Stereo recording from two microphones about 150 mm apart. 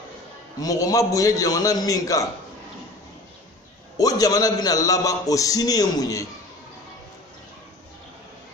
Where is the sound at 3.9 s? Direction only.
25° left (ahead or behind).